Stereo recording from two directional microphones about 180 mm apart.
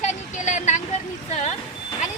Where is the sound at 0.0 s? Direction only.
40° left (ahead or behind).